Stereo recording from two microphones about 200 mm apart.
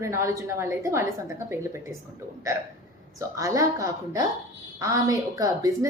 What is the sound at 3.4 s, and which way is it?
A woman's voice, 15° right (ahead or behind).